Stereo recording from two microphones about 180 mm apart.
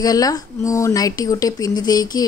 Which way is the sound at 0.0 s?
20° left (ahead or behind).